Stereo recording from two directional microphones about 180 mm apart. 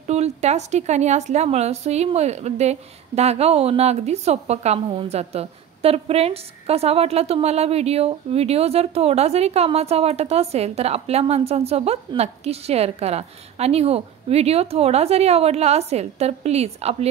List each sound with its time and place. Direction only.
0.0 s speech: 35° right (ahead or behind)